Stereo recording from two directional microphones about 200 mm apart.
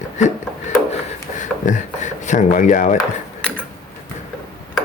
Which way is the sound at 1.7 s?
40° left (ahead or behind).